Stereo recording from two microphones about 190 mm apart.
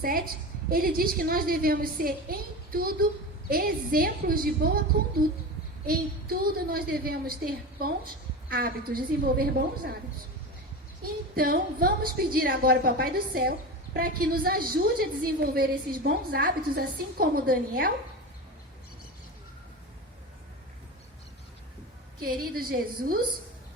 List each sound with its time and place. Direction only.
0.0 s a woman's voice: 50° right (ahead or behind)
11.0 s a woman's voice: 50° right (ahead or behind)
22.2 s a woman's voice: 50° right (ahead or behind)